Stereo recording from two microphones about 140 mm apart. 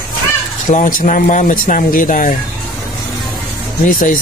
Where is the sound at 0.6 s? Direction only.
65° left (ahead or behind).